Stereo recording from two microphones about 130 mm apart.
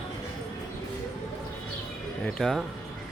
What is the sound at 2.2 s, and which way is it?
Speech, 5° left (ahead or behind).